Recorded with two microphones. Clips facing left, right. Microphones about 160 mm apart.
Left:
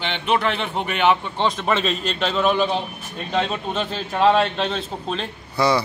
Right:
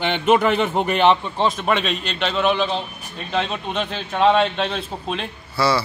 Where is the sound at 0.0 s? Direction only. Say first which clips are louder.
Right 5 dB; 45° right (ahead or behind).